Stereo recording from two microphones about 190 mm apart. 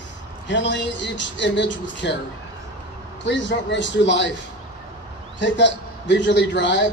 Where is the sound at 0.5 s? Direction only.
70° left (ahead or behind).